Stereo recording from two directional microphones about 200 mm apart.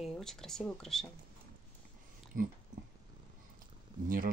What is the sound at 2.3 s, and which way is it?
Dog, 40° right (ahead or behind).